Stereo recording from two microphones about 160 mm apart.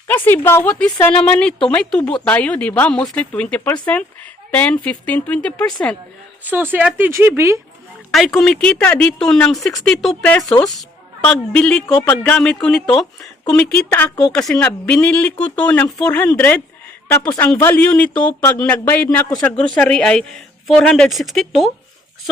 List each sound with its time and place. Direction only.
0.1 s a woman's voice: 15° left (ahead or behind)
6.4 s speech: 10° right (ahead or behind)
8.1 s a woman's voice: centre (ahead or behind)